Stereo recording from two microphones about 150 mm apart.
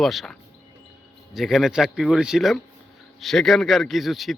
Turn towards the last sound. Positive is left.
turn(degrees=0)  # may be behind; listen again after turning